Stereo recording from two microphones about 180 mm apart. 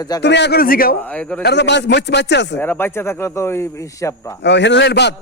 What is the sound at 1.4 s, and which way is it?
A man's voice, 70° left (ahead or behind).